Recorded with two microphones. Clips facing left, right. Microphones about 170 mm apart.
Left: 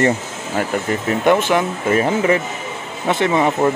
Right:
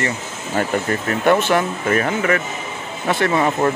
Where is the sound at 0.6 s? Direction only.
15° left (ahead or behind).